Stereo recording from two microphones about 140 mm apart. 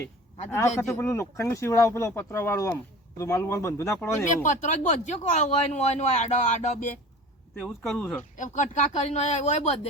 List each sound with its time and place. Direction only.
0.8 s speech: 20° left (ahead or behind)
4.4 s speech: 60° left (ahead or behind)
7.7 s speech: 5° left (ahead or behind)
8.4 s speech: 60° left (ahead or behind)